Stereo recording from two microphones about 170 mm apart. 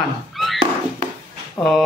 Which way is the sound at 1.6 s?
15° left (ahead or behind).